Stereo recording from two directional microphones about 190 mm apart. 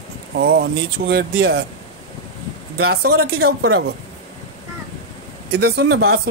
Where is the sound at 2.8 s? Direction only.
55° right (ahead or behind).